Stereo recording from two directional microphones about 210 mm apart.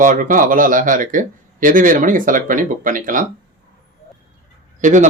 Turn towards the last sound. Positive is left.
turn(degrees=-35)  # may be behind; listen again after turning